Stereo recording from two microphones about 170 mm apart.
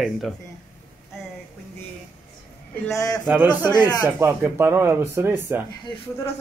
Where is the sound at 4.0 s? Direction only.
15° right (ahead or behind).